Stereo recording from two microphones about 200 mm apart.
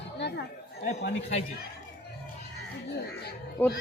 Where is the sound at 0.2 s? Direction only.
55° left (ahead or behind).